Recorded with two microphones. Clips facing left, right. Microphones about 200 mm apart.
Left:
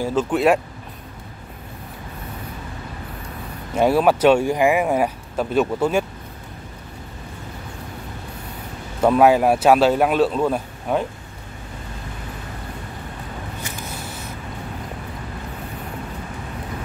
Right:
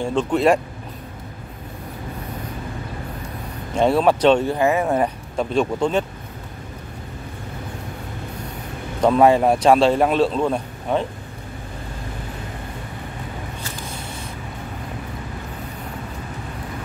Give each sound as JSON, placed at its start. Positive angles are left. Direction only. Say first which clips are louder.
{"t": 0.0, "sound": "speech", "louder": "even", "side_deg": 5}
{"t": 3.7, "sound": "speech", "louder": "even", "side_deg": 5}
{"t": 9.0, "sound": "speech", "louder": "even", "side_deg": 5}
{"t": 13.9, "sound": "vehicle", "louder": "even", "side_deg": -25}